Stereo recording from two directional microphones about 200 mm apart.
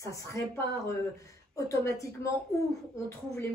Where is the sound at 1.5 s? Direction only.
15° left (ahead or behind).